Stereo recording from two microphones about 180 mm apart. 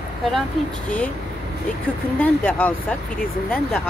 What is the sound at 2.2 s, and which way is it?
Speech, 10° left (ahead or behind).